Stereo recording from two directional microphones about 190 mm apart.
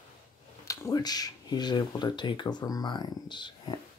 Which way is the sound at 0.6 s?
15° left (ahead or behind).